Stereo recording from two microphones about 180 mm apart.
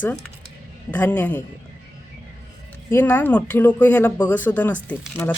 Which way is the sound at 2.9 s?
10° left (ahead or behind).